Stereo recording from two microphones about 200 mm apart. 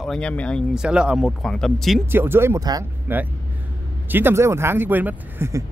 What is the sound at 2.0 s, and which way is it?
Speech, 10° right (ahead or behind).